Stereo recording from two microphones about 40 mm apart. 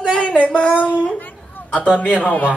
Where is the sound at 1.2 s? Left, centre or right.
Left.